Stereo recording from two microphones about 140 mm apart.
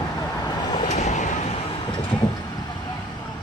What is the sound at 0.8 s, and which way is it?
Vehicle, 55° left (ahead or behind).